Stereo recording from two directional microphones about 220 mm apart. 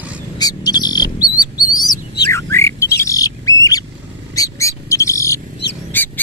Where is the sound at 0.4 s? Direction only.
15° left (ahead or behind).